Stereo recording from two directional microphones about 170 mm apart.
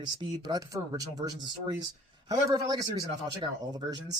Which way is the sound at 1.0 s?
25° right (ahead or behind).